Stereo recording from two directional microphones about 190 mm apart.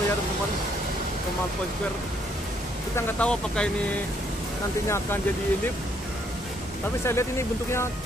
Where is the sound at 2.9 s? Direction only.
5° left (ahead or behind).